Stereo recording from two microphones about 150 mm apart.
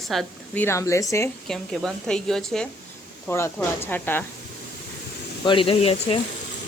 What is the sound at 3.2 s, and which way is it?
Speech, 15° left (ahead or behind).